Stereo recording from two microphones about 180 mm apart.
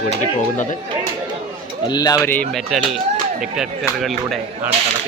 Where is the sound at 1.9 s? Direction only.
20° left (ahead or behind).